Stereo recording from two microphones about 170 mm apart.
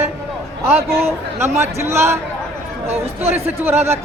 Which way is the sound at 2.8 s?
40° right (ahead or behind).